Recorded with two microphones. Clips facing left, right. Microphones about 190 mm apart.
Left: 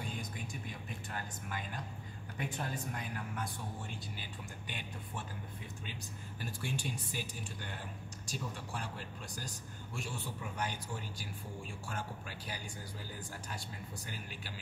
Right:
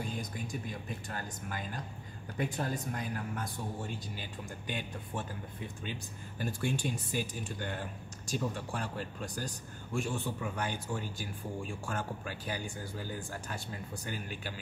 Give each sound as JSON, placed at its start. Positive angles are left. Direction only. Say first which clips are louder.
{"t": 1.1, "sound": "speech", "louder": "right 1 dB", "side_deg": -40}
{"t": 6.4, "sound": "speech", "louder": "right 7 dB", "side_deg": -50}
{"t": 14.0, "sound": "speech", "louder": "right 7 dB", "side_deg": -50}